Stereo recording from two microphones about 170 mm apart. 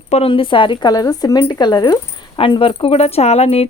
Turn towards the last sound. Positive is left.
turn(degrees=40)  # may be behind; listen again after turning